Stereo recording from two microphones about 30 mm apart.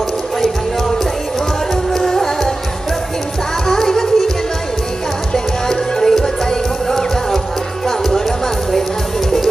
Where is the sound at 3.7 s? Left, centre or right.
Centre.